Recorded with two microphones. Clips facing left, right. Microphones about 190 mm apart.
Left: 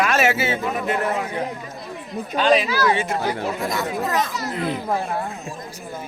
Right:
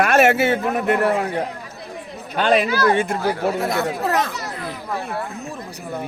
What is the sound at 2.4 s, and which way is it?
Speech, 55° right (ahead or behind).